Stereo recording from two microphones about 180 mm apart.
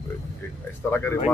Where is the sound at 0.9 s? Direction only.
10° left (ahead or behind).